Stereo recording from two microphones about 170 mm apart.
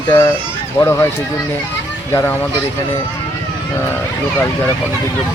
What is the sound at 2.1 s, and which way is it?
Speech, 15° left (ahead or behind).